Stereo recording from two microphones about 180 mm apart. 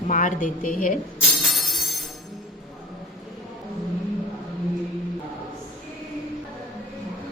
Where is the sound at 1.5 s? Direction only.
Centre (ahead or behind).